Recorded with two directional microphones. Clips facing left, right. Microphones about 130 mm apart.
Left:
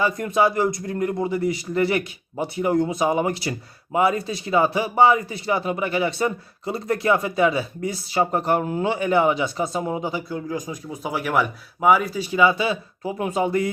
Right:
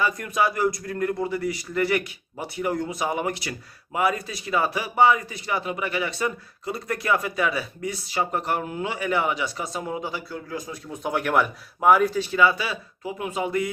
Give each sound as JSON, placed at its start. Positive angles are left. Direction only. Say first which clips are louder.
{"t": 0.0, "sound": "speech", "louder": "left 4 dB", "side_deg": 30}
{"t": 13.1, "sound": "speech", "louder": "left 4 dB", "side_deg": 35}